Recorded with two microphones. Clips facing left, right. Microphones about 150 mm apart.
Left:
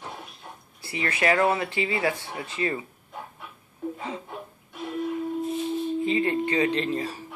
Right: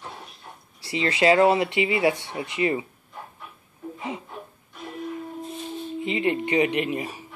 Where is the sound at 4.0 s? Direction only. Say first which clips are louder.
Right 1 dB; 20° right (ahead or behind).